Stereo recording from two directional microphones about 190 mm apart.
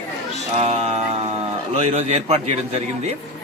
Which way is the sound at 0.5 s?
30° right (ahead or behind).